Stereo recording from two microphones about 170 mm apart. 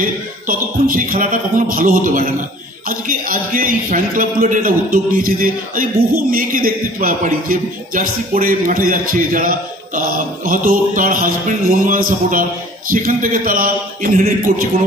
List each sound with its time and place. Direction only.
0.0 s speech: 55° right (ahead or behind)